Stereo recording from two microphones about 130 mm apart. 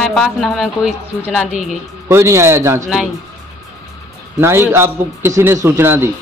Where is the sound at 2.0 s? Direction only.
20° right (ahead or behind).